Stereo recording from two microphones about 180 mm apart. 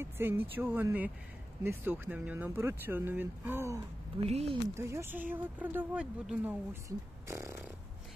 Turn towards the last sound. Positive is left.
turn(degrees=-15)  # may be behind; listen again after turning